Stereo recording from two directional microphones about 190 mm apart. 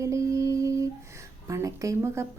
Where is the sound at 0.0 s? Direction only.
15° right (ahead or behind).